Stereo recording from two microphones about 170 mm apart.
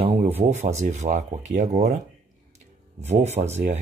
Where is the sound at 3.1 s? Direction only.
40° right (ahead or behind).